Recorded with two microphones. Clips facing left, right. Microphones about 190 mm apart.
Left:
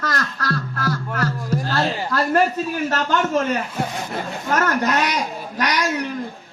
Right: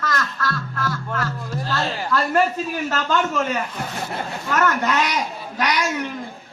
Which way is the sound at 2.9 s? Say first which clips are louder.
Even; 40° left (ahead or behind).